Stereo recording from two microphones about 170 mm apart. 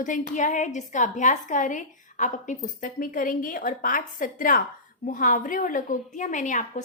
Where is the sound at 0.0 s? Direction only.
50° left (ahead or behind).